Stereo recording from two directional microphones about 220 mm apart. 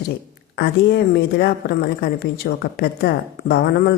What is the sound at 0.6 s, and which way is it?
Speech, 45° left (ahead or behind).